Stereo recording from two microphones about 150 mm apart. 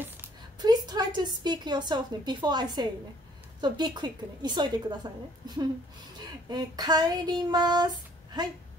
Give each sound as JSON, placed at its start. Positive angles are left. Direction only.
{"t": 0.6, "sound": "a woman's voice", "side_deg": -25}
{"t": 3.6, "sound": "female singing", "side_deg": -30}
{"t": 6.5, "sound": "female singing", "side_deg": -25}